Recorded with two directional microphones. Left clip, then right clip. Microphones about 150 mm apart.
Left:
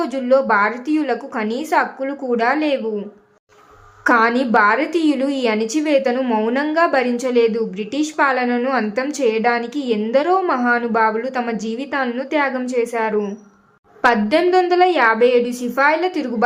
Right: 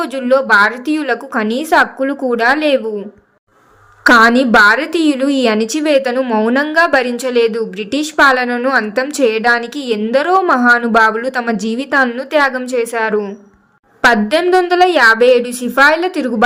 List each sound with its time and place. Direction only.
0.0 s a woman's voice: 30° right (ahead or behind)
4.0 s a woman's voice: 35° right (ahead or behind)